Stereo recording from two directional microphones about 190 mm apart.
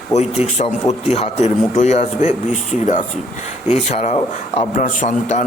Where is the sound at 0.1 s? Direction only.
35° left (ahead or behind).